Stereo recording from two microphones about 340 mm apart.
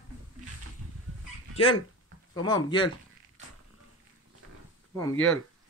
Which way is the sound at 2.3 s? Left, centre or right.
Centre.